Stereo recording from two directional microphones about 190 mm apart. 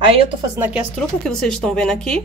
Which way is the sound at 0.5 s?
10° right (ahead or behind).